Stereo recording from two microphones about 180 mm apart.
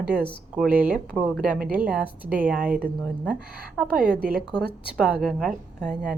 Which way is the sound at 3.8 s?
5° right (ahead or behind).